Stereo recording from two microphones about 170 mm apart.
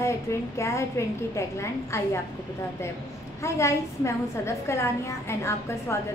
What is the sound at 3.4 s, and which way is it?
A woman's voice, 15° left (ahead or behind).